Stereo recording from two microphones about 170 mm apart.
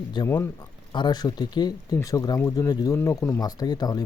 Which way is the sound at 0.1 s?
25° left (ahead or behind).